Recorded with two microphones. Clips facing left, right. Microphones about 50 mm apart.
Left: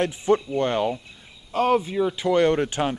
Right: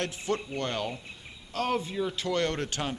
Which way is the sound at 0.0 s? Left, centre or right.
Left.